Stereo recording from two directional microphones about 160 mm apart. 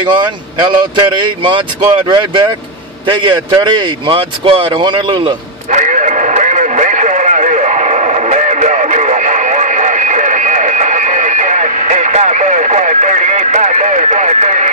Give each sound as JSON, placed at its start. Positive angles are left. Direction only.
{"t": 0.2, "sound": "speech", "side_deg": -30}
{"t": 5.7, "sound": "radio", "side_deg": -50}